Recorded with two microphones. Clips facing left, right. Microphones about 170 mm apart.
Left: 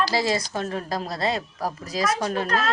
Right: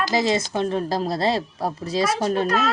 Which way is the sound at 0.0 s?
20° right (ahead or behind).